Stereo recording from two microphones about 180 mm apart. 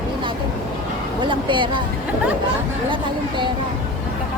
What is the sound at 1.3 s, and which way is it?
Speech, 25° right (ahead or behind).